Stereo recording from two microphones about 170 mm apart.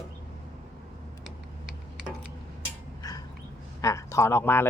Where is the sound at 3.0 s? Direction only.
20° left (ahead or behind).